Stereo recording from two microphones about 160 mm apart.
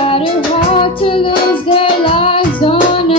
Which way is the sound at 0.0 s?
35° left (ahead or behind).